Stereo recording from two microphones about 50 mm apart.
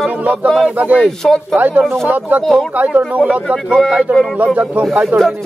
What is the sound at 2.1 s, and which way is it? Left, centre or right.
Speech, right.